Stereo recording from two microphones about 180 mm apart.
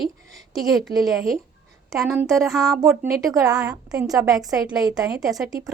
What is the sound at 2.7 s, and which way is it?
A woman's voice, 15° right (ahead or behind).